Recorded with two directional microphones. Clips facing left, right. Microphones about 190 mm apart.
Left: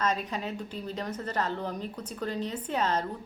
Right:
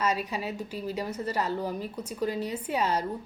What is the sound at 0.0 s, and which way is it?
A woman's voice, 10° right (ahead or behind).